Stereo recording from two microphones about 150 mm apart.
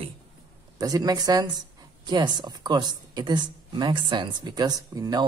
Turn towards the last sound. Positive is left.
turn(degrees=-25)  # may be behind; listen again after turning